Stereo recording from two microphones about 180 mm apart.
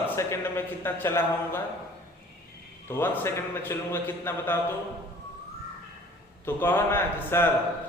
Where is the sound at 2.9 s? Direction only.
15° left (ahead or behind).